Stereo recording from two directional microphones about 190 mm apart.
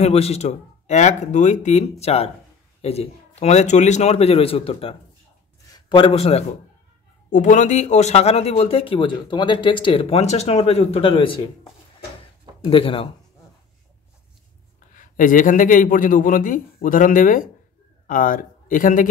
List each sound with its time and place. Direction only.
0.0 s a man's voice: 35° left (ahead or behind)
12.6 s speech: 30° left (ahead or behind)
15.0 s a man's voice: 45° left (ahead or behind)